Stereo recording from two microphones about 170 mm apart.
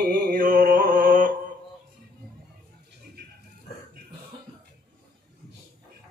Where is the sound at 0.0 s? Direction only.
60° right (ahead or behind).